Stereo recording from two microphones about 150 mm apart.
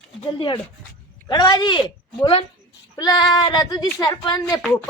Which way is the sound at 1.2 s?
25° left (ahead or behind).